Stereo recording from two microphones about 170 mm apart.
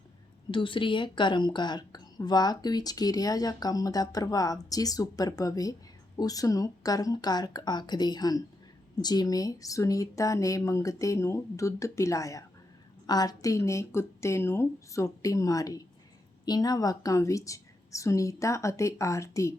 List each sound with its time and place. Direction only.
0.5 s a woman's voice: 30° left (ahead or behind)